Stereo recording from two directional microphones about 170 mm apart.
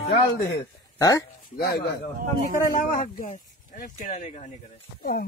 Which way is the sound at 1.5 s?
70° left (ahead or behind).